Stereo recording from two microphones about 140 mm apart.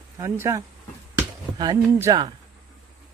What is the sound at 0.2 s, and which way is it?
Speech, 20° right (ahead or behind).